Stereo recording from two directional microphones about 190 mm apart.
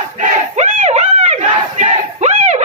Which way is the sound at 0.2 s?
40° right (ahead or behind).